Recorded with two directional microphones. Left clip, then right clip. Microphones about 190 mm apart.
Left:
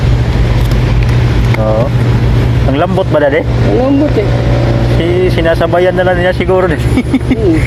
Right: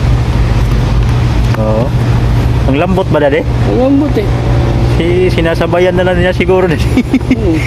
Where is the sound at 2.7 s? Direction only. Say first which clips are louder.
Even; 30° right (ahead or behind).